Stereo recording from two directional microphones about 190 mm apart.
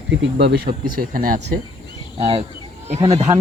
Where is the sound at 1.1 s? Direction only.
50° right (ahead or behind).